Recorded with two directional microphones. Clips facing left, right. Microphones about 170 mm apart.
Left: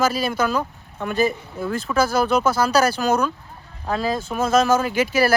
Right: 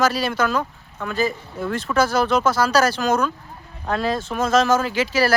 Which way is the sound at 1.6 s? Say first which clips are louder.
Right 1 dB; centre (ahead or behind).